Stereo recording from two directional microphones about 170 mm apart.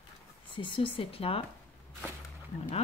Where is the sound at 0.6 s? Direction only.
35° left (ahead or behind).